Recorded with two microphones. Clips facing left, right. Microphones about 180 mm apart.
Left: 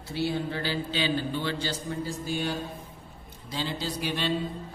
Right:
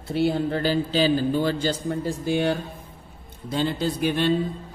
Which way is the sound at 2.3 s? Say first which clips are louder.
Right 9 dB; 65° right (ahead or behind).